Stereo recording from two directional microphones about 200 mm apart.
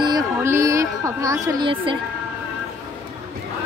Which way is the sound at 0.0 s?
15° right (ahead or behind).